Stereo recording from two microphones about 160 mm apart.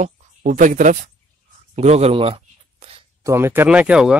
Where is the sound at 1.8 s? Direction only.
40° right (ahead or behind).